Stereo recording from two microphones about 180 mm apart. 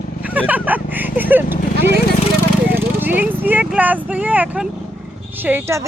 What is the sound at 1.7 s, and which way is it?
Speech, 65° right (ahead or behind).